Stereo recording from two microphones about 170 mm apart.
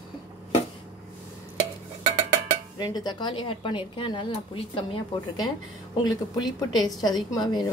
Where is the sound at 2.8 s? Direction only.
25° left (ahead or behind).